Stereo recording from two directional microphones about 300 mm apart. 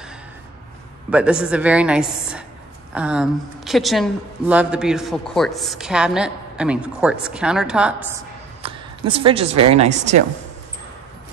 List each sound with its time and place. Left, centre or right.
1.1 s speech: centre
8.6 s a sound: centre
9.7 s speech: right